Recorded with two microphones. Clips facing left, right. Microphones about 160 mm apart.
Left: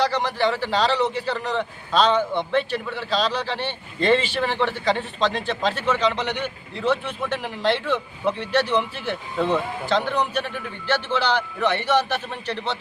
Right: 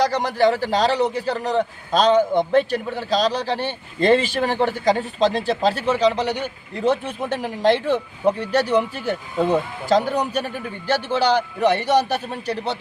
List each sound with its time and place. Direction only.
0.0 s a man's voice: 40° right (ahead or behind)